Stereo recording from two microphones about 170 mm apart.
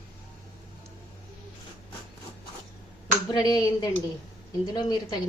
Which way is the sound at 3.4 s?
25° left (ahead or behind).